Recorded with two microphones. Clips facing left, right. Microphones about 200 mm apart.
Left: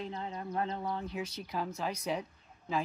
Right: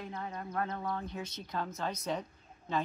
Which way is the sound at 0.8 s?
10° left (ahead or behind).